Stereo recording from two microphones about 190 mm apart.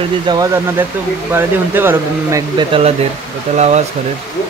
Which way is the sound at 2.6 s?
30° right (ahead or behind).